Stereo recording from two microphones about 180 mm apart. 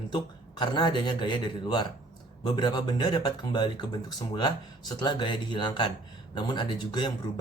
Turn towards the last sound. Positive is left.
turn(degrees=25)  # may be behind; listen again after turning